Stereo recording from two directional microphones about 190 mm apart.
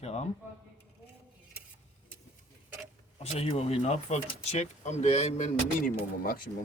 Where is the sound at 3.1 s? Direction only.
30° left (ahead or behind).